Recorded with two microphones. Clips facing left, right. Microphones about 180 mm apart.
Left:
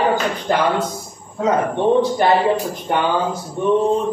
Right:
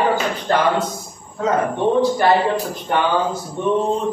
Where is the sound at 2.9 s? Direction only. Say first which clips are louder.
Even; 15° left (ahead or behind).